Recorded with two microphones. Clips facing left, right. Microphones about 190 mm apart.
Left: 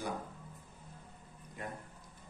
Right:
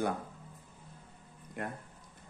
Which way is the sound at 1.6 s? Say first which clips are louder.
Right 5 dB; 65° right (ahead or behind).